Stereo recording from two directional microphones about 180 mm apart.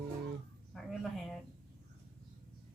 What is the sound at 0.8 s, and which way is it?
Speech, centre (ahead or behind).